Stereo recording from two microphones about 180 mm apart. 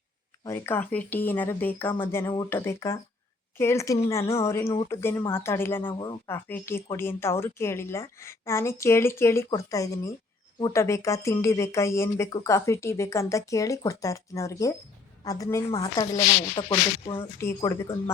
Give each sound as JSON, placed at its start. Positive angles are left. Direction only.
{"t": 0.4, "sound": "speech", "side_deg": 15}
{"t": 17.6, "sound": "speech", "side_deg": 15}